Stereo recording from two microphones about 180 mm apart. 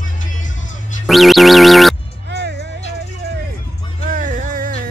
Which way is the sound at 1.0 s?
Centre (ahead or behind).